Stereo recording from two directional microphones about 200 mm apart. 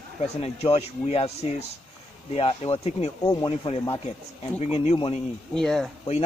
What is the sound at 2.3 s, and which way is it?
Speech, 30° left (ahead or behind).